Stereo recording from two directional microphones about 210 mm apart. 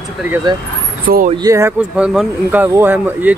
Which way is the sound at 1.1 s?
40° right (ahead or behind).